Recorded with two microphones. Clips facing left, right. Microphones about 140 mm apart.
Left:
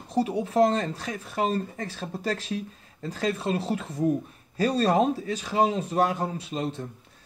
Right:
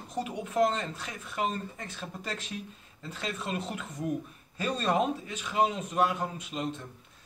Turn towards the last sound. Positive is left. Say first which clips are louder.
# left 4 dB
turn(degrees=35)  # may be behind; listen again after turning